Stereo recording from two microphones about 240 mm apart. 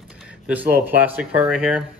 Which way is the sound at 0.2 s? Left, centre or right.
Centre.